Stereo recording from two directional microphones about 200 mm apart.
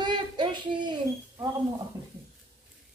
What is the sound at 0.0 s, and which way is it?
Child singing, 20° right (ahead or behind).